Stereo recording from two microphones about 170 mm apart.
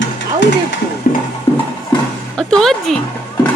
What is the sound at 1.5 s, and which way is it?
Music, 35° left (ahead or behind).